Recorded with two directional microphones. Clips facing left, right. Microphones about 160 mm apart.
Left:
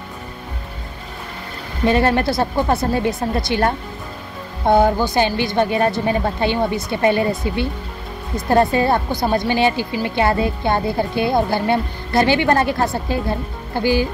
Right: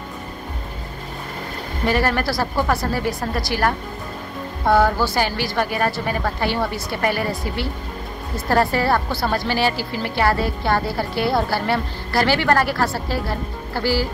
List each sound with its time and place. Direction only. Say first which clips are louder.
1.9 s a woman's voice: left 4 dB; 25° left (ahead or behind)